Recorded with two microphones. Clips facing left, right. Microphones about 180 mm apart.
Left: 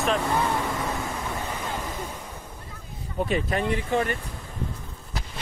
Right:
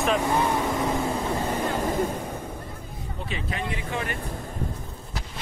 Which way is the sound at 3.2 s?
50° left (ahead or behind).